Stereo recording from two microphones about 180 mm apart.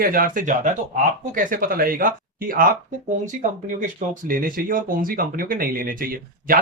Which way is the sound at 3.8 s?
50° right (ahead or behind).